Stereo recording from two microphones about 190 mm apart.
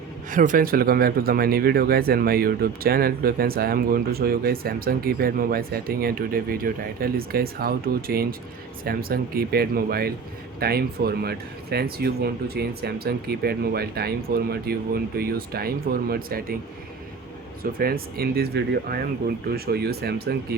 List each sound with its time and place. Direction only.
0.3 s speech: 45° right (ahead or behind)
17.6 s speech: 50° right (ahead or behind)